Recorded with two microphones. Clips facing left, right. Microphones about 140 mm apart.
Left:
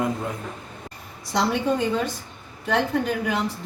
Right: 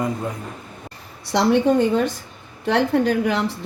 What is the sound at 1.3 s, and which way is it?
Speech, 65° right (ahead or behind).